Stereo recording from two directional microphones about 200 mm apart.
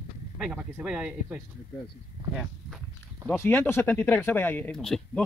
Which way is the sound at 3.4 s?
10° left (ahead or behind).